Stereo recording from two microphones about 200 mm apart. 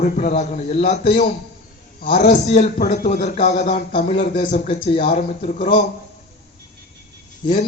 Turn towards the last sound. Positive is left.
turn(degrees=25)  # may be behind; listen again after turning